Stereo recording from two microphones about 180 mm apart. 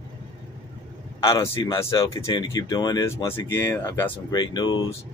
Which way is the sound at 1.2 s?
15° left (ahead or behind).